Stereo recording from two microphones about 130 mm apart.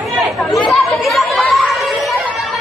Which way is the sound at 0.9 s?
Centre (ahead or behind).